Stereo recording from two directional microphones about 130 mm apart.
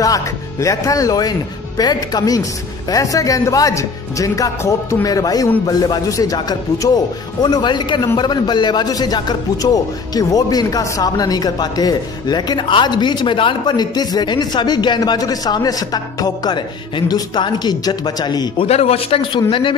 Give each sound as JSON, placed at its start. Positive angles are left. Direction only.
{"t": 0.0, "sound": "a man's voice", "side_deg": 25}
{"t": 18.7, "sound": "speech", "side_deg": 50}